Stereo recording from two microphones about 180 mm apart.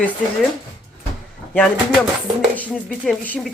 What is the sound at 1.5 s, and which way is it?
Speech, 5° left (ahead or behind).